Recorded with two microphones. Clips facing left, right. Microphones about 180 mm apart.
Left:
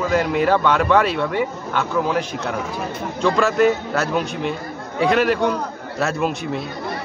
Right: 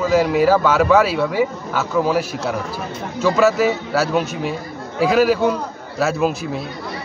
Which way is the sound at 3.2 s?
5° right (ahead or behind).